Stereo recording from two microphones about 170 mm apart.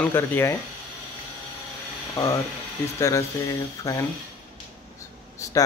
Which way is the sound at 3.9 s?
20° left (ahead or behind).